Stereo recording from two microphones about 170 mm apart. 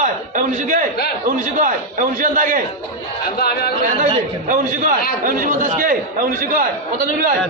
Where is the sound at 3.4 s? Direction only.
65° left (ahead or behind).